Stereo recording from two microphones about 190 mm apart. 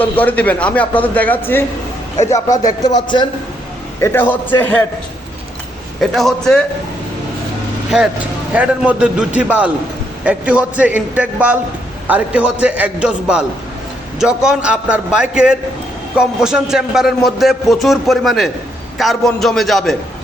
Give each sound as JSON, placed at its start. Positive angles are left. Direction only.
{"t": 0.0, "sound": "a man's voice", "side_deg": 10}
{"t": 2.8, "sound": "a man's voice", "side_deg": 20}
{"t": 4.0, "sound": "a man's voice", "side_deg": 10}
{"t": 6.0, "sound": "a man's voice", "side_deg": 0}
{"t": 7.9, "sound": "a man's voice", "side_deg": -5}